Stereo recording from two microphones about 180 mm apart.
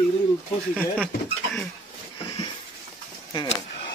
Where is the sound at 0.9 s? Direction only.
5° left (ahead or behind).